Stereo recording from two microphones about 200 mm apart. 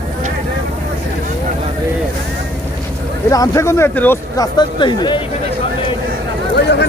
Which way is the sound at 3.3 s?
15° left (ahead or behind).